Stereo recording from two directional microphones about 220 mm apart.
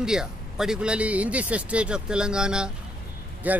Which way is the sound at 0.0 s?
5° right (ahead or behind).